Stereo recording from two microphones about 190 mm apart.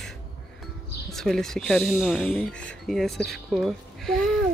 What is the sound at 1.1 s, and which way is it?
Speech, centre (ahead or behind).